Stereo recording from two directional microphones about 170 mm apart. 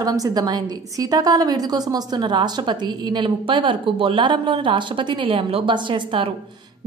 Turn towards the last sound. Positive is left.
turn(degrees=-30)  # may be behind; listen again after turning